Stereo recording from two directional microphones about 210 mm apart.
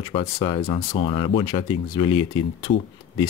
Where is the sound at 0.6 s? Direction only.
35° left (ahead or behind).